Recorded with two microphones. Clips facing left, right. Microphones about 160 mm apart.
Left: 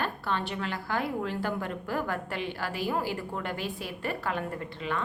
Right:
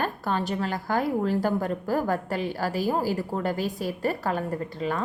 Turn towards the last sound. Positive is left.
turn(degrees=-40)  # may be behind; listen again after turning